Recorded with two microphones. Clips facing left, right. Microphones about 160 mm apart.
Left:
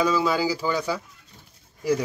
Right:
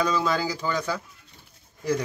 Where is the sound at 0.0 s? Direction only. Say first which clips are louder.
Left 2 dB; 5° left (ahead or behind).